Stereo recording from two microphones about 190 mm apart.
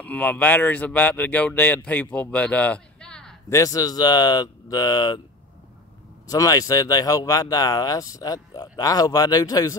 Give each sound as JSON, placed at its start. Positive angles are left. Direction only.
{"t": 0.0, "sound": "a man's voice", "side_deg": 10}
{"t": 3.4, "sound": "speech", "side_deg": 15}
{"t": 6.2, "sound": "speech", "side_deg": 20}